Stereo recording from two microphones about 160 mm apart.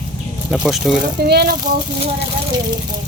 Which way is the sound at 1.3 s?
80° right.